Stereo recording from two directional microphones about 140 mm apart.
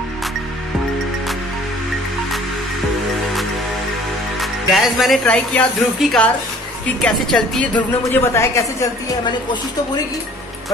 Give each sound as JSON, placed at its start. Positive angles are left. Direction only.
{"t": 4.4, "sound": "speech", "side_deg": 0}
{"t": 8.1, "sound": "a woman's voice", "side_deg": 20}